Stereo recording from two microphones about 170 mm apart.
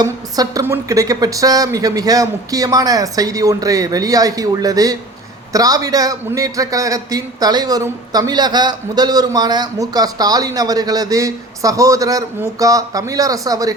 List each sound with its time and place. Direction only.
0.0 s a man's voice: 20° right (ahead or behind)